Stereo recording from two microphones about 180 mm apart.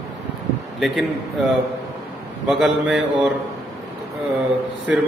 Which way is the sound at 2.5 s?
5° right (ahead or behind).